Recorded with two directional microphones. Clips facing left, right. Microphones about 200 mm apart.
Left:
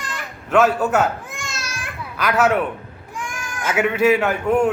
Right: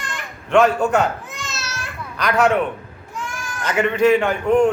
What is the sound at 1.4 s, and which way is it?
Babbling, 10° left (ahead or behind).